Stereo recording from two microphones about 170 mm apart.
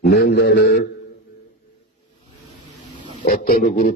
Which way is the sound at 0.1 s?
70° left (ahead or behind).